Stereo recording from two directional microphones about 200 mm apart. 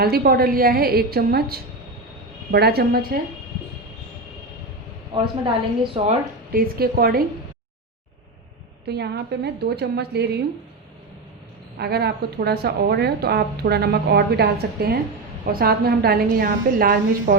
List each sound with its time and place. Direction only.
0.0 s a woman's voice: 50° right (ahead or behind)
5.1 s a woman's voice: 25° right (ahead or behind)
6.5 s a woman's voice: 50° right (ahead or behind)
8.9 s a woman's voice: 55° right (ahead or behind)
11.8 s a woman's voice: 55° right (ahead or behind)